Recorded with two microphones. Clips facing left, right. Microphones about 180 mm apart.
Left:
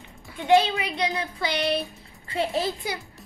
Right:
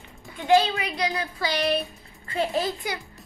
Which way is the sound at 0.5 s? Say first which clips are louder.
Even; 25° left (ahead or behind).